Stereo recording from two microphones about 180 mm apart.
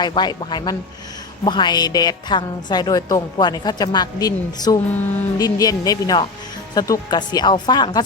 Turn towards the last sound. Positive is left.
turn(degrees=25)  # may be behind; listen again after turning